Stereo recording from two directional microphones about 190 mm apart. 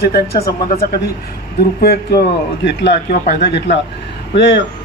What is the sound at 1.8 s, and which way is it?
Speech, 55° left (ahead or behind).